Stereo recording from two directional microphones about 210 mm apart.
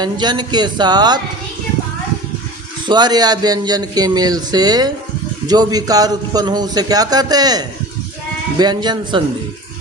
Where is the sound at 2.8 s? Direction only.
20° right (ahead or behind).